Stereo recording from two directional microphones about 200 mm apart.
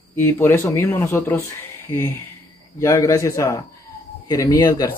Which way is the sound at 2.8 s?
15° left (ahead or behind).